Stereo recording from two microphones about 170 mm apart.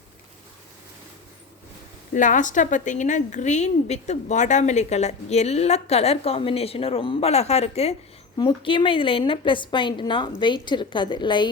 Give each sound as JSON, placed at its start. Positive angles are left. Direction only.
{"t": 2.1, "sound": "a woman's voice", "side_deg": 50}